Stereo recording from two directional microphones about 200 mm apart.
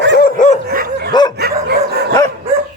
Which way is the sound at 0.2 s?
40° left (ahead or behind).